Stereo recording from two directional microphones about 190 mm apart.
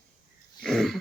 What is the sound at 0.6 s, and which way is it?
Throat clearing, centre (ahead or behind).